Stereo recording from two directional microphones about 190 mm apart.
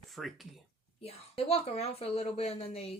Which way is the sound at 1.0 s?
30° left (ahead or behind).